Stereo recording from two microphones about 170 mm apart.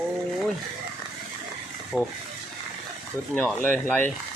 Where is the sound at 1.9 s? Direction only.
5° right (ahead or behind).